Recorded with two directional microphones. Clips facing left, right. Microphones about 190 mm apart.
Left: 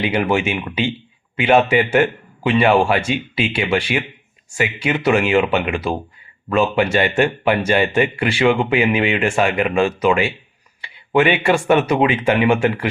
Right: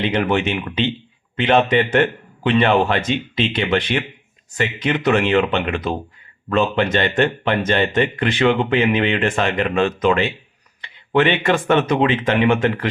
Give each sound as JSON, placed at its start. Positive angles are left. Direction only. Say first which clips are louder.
{"t": 0.0, "sound": "a man's voice", "louder": "left 1 dB", "side_deg": 10}